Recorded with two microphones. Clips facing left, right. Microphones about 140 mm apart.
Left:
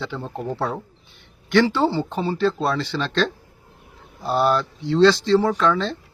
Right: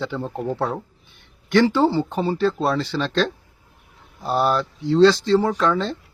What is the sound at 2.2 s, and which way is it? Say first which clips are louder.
Speech: right 2 dB; 40° right (ahead or behind).